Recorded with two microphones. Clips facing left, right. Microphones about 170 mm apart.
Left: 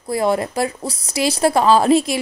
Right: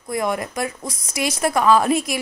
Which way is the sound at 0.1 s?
30° left (ahead or behind).